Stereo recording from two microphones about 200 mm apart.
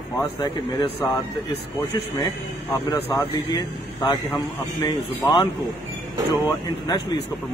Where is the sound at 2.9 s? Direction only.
20° left (ahead or behind).